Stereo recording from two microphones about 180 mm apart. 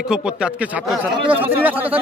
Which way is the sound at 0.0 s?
5° right (ahead or behind).